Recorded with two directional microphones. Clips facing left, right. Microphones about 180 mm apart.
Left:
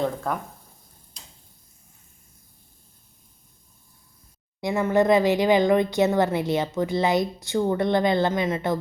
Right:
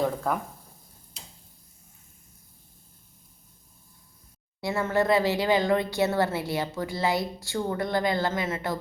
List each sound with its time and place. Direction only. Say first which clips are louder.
0.0 s speech: even; 5° right (ahead or behind)
4.6 s speech: left 4 dB; 15° left (ahead or behind)